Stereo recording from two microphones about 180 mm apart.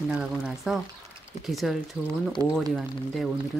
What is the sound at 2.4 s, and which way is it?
Speech, 20° right (ahead or behind).